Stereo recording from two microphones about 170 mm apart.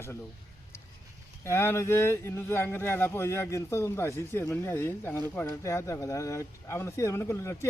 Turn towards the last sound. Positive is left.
turn(degrees=15)  # may be behind; listen again after turning